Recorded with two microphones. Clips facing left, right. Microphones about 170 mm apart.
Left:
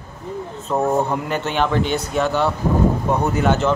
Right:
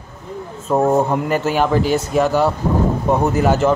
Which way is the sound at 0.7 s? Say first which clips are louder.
Right 4 dB; 20° right (ahead or behind).